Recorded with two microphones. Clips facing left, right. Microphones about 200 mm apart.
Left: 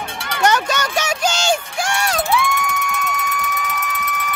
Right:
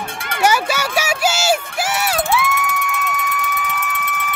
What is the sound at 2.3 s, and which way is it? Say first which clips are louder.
Music: even; 5° right (ahead or behind).